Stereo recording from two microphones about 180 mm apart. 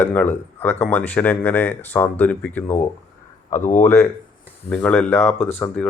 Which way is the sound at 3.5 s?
45° left (ahead or behind).